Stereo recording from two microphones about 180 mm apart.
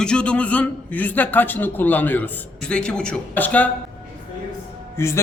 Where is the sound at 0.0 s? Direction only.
5° left (ahead or behind).